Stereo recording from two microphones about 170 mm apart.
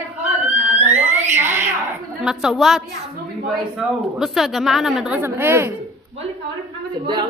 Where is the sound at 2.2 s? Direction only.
5° right (ahead or behind).